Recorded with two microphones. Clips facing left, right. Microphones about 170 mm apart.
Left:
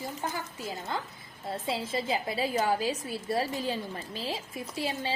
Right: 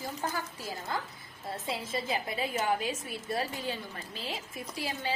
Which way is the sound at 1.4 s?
25° left (ahead or behind).